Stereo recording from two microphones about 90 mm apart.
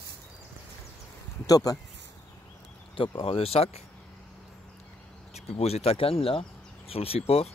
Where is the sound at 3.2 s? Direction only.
90° left.